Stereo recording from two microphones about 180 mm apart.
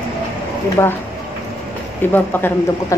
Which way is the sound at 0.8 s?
15° left (ahead or behind).